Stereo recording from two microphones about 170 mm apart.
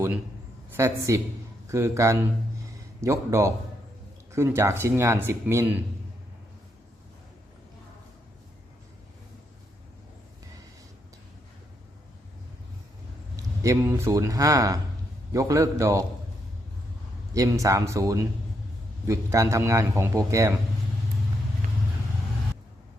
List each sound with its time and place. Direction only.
0.8 s a man's voice: 15° right (ahead or behind)
13.3 s speech: 20° right (ahead or behind)
17.3 s speech: 20° right (ahead or behind)